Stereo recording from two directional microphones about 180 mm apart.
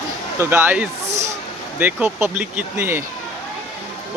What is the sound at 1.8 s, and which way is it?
Speech, 10° right (ahead or behind).